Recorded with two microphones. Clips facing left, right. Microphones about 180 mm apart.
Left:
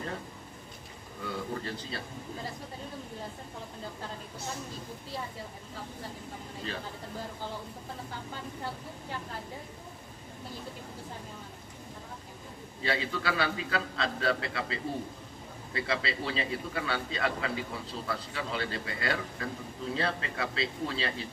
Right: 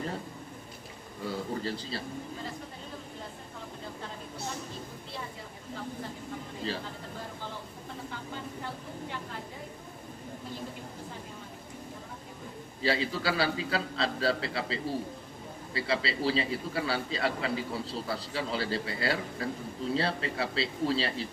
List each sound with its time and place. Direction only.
1.2 s a man's voice: 30° right (ahead or behind)
12.8 s a man's voice: 30° right (ahead or behind)